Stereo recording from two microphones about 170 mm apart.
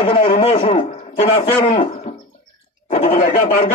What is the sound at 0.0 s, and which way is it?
A man's voice, 35° left (ahead or behind).